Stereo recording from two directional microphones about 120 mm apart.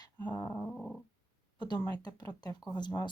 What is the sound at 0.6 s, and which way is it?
Dog, 5° left (ahead or behind).